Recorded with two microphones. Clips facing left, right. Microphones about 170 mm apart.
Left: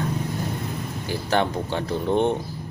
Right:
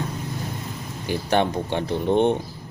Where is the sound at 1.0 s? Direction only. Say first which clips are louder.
Right 2 dB; 20° right (ahead or behind).